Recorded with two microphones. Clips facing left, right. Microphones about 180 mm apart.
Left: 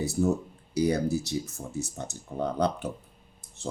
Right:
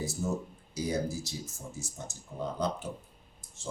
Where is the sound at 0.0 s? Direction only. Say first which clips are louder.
Left 7 dB; 65° left (ahead or behind).